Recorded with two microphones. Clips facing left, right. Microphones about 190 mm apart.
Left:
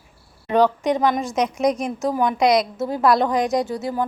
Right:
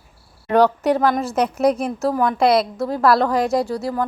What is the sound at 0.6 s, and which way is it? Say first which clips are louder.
Speech: right 2 dB; 10° right (ahead or behind).